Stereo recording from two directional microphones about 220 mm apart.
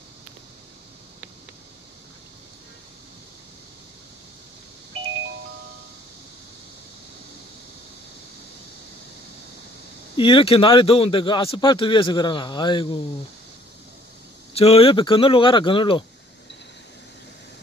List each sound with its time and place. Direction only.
10.1 s a man's voice: 25° left (ahead or behind)
14.5 s a man's voice: 25° left (ahead or behind)